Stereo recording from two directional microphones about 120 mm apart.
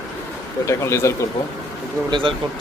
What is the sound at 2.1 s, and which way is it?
Speech, 45° right (ahead or behind).